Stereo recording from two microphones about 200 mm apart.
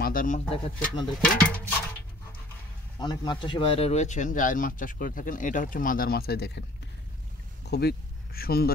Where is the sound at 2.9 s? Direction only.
20° left (ahead or behind).